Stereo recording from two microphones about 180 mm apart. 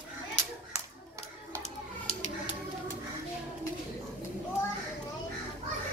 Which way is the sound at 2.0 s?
35° left (ahead or behind).